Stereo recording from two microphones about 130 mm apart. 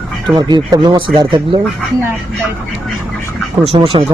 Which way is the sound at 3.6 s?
45° right (ahead or behind).